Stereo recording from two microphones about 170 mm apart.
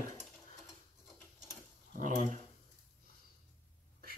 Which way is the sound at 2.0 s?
50° right (ahead or behind).